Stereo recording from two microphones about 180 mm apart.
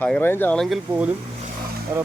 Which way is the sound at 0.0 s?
10° left (ahead or behind).